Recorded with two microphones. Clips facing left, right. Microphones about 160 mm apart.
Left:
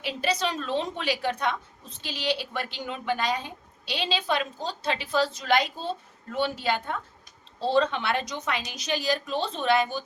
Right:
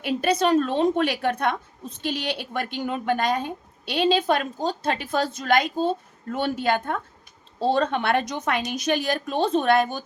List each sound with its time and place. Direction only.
0.0 s a woman's voice: 50° right (ahead or behind)